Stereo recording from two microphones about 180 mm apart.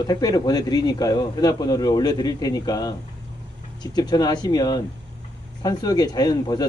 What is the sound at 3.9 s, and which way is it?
Speech, 20° left (ahead or behind).